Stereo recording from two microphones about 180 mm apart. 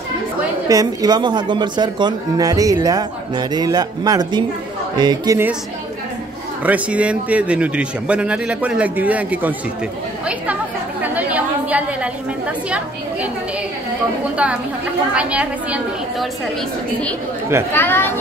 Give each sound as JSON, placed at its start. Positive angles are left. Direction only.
{"t": 0.7, "sound": "speech", "side_deg": -20}
{"t": 6.6, "sound": "speech", "side_deg": -10}
{"t": 10.2, "sound": "chatter", "side_deg": -10}
{"t": 12.6, "sound": "speech", "side_deg": -5}
{"t": 14.3, "sound": "speech", "side_deg": -5}
{"t": 17.7, "sound": "speech", "side_deg": 10}